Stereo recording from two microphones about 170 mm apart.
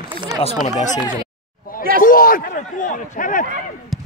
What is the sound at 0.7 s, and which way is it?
Speech, 45° left (ahead or behind).